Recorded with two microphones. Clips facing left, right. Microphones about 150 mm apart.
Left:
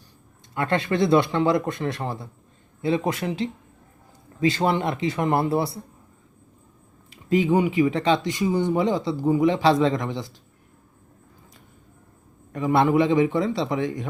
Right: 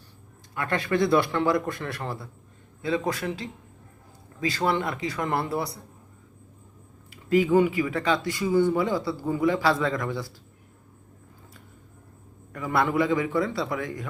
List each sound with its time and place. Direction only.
0.5 s speech: 25° left (ahead or behind)
7.1 s speech: 20° left (ahead or behind)
12.5 s speech: 20° left (ahead or behind)